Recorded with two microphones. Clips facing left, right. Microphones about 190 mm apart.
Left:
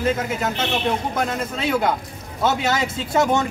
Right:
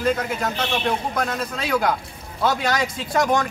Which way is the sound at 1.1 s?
20° left (ahead or behind).